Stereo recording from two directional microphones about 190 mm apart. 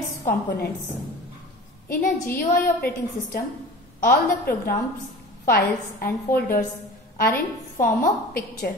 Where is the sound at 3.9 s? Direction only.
50° left (ahead or behind).